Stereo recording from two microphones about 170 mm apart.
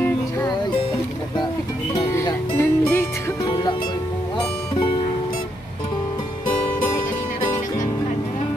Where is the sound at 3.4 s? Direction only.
25° left (ahead or behind).